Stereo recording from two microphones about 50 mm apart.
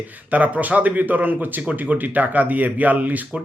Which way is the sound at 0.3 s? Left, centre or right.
Right.